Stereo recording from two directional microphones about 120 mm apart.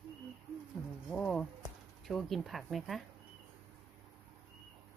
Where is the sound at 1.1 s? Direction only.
5° left (ahead or behind).